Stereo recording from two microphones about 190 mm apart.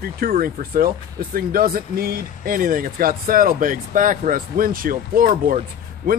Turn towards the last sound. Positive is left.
turn(degrees=-45)  # may be behind; listen again after turning